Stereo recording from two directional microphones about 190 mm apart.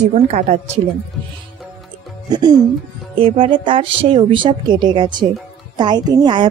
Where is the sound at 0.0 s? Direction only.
40° right (ahead or behind).